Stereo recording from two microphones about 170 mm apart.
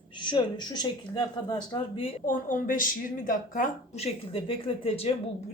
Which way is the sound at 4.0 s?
35° left (ahead or behind).